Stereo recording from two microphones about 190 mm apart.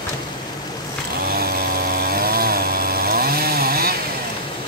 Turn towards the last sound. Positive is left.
turn(degrees=-50)  # may be behind; listen again after turning